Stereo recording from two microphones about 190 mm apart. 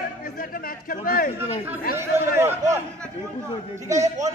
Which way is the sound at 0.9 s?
50° left (ahead or behind).